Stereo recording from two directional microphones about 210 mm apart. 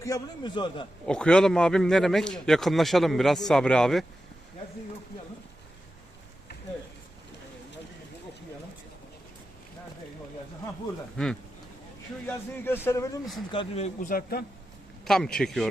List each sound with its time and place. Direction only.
0.0 s a man's voice: 20° left (ahead or behind)
1.0 s a man's voice: 5° left (ahead or behind)
12.6 s a man's voice: 10° left (ahead or behind)
13.5 s a man's voice: 25° left (ahead or behind); by 14.4 s 45° left (ahead or behind)
15.0 s a man's voice: 5° left (ahead or behind)